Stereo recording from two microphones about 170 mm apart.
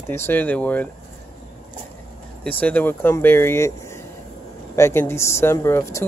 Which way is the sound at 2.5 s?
10° left (ahead or behind).